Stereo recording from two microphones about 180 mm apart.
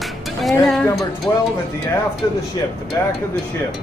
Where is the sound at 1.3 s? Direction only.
15° left (ahead or behind).